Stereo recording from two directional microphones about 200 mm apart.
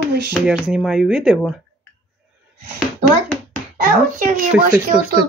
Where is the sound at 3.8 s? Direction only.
45° right (ahead or behind).